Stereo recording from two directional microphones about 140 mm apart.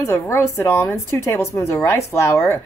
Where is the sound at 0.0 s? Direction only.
20° left (ahead or behind).